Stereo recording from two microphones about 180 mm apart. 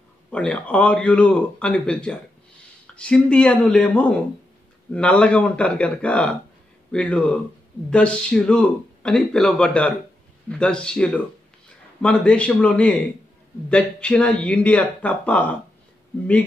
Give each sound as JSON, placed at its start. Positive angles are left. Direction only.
{"t": 0.3, "sound": "a man's voice", "side_deg": 5}